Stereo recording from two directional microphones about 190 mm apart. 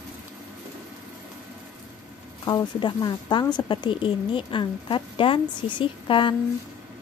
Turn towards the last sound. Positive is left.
turn(degrees=25)  # may be behind; listen again after turning